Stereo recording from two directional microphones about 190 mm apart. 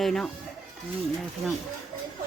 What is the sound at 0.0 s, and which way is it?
Speech, 5° left (ahead or behind).